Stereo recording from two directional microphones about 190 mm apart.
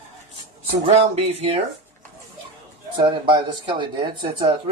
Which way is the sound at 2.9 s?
25° right (ahead or behind).